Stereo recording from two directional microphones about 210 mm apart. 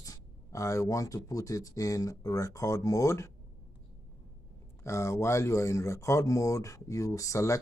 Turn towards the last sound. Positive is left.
turn(degrees=15)  # may be behind; listen again after turning